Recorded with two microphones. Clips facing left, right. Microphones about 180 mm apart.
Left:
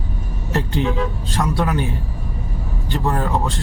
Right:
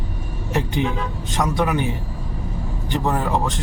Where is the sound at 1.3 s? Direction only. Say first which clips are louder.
Right 2 dB; 15° right (ahead or behind).